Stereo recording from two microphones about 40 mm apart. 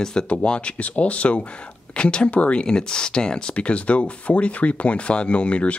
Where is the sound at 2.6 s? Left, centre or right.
Left.